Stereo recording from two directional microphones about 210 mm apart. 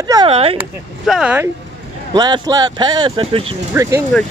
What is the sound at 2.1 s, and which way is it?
Speech, 20° right (ahead or behind).